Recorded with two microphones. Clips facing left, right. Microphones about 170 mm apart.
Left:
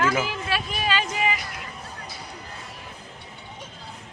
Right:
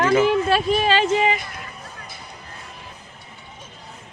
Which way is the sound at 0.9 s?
30° right (ahead or behind).